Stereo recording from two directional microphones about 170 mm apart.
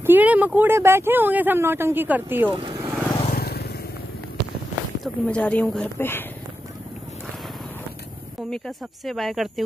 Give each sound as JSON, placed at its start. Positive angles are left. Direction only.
{"t": 0.0, "sound": "speech", "side_deg": -10}
{"t": 2.5, "sound": "vehicle", "side_deg": -30}
{"t": 3.3, "sound": "vehicle", "side_deg": 65}
{"t": 5.0, "sound": "a woman's voice", "side_deg": 5}
{"t": 8.5, "sound": "speech", "side_deg": 0}